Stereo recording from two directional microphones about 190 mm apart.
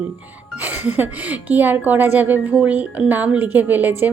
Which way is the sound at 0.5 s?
10° right (ahead or behind).